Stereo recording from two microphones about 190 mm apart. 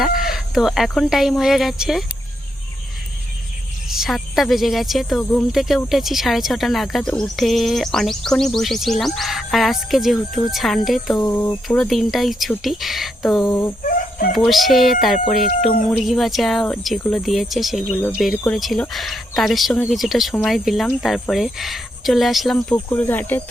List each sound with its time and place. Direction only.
0.0 s speech: centre (ahead or behind)
3.8 s speech: centre (ahead or behind)
11.2 s speech: 15° left (ahead or behind)
13.4 s speech: 10° left (ahead or behind)
13.8 s chicken: 45° left (ahead or behind)
14.3 s speech: centre (ahead or behind)